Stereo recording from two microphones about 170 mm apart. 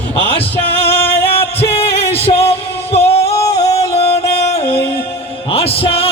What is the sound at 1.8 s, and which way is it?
Music, 35° left (ahead or behind).